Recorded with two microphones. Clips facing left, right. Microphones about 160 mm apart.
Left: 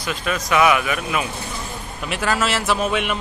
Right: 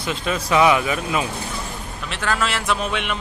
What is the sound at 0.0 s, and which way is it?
A man's voice, 25° right (ahead or behind).